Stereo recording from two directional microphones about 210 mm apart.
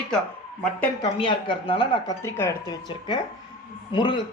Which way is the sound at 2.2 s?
10° left (ahead or behind).